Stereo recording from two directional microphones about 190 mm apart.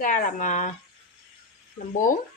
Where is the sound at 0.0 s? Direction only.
45° left (ahead or behind).